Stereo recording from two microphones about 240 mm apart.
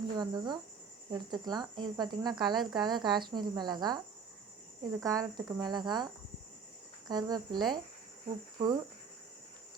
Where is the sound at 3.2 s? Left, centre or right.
Centre.